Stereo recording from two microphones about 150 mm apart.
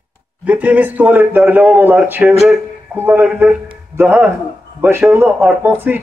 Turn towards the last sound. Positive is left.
turn(degrees=-15)  # may be behind; listen again after turning